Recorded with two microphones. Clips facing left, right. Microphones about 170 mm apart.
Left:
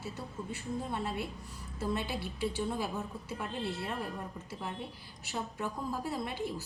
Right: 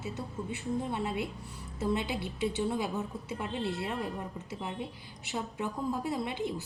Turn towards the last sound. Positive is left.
turn(degrees=-20)  # may be behind; listen again after turning